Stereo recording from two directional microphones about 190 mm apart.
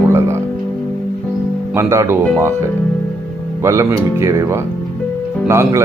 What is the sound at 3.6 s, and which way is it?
Speech, 15° right (ahead or behind).